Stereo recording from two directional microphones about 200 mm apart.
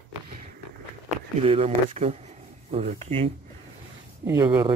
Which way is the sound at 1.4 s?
30° right (ahead or behind).